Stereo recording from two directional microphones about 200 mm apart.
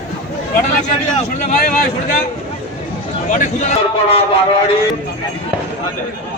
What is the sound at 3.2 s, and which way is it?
Speech, 35° left (ahead or behind).